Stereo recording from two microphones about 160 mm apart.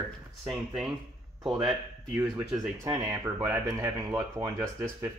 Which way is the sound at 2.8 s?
20° right (ahead or behind).